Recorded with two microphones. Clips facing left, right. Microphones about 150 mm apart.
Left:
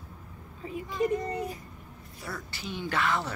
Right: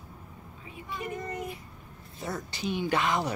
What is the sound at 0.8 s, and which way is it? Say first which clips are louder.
Speech: left 7 dB; 35° left (ahead or behind).